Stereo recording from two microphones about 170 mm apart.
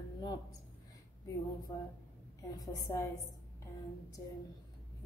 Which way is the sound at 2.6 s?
20° left (ahead or behind).